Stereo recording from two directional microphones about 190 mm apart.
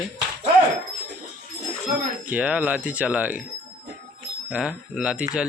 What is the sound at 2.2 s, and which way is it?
Speech, 10° right (ahead or behind).